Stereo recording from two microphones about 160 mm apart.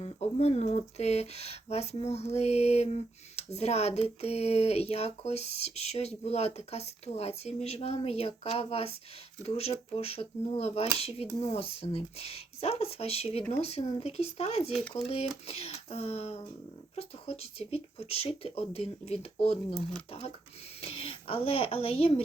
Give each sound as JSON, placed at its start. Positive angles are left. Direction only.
{"t": 0.0, "sound": "speech", "side_deg": 40}
{"t": 14.7, "sound": "speech", "side_deg": 0}
{"t": 14.9, "sound": "speech", "side_deg": 40}
{"t": 20.8, "sound": "speech", "side_deg": 35}